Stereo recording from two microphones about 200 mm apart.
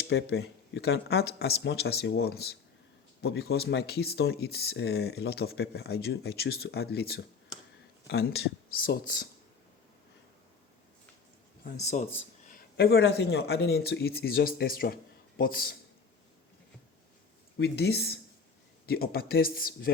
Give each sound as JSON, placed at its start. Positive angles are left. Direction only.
{"t": 0.0, "sound": "speech", "side_deg": 55}
{"t": 12.5, "sound": "speech", "side_deg": 50}
{"t": 17.6, "sound": "speech", "side_deg": 55}